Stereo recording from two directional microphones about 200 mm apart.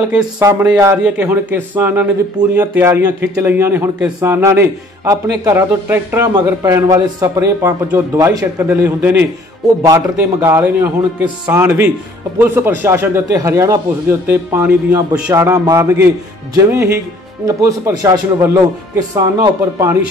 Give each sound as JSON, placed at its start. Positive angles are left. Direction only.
{"t": 0.4, "sound": "a man's voice", "side_deg": -15}